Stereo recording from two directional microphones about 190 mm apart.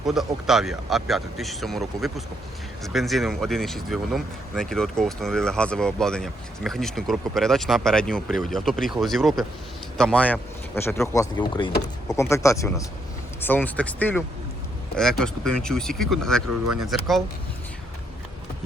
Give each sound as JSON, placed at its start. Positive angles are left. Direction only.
{"t": 0.0, "sound": "speech", "side_deg": 0}